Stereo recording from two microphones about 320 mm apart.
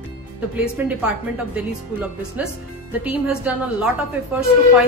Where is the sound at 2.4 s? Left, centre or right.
Centre.